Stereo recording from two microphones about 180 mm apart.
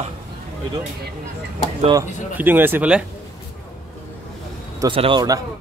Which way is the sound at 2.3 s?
10° right (ahead or behind).